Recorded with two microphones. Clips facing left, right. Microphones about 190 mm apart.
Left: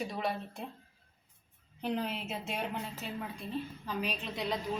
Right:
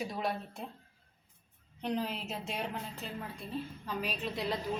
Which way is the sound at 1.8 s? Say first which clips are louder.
Even; centre (ahead or behind).